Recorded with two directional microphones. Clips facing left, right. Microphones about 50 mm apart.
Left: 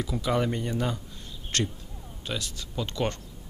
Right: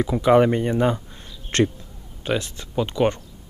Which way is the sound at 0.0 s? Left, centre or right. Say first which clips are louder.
Right 11 dB; right.